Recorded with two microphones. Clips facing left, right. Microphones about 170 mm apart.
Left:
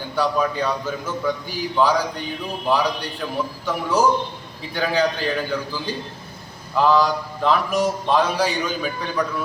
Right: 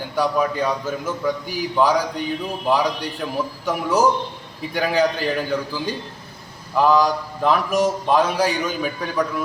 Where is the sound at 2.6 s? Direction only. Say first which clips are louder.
Right 1 dB; 20° right (ahead or behind).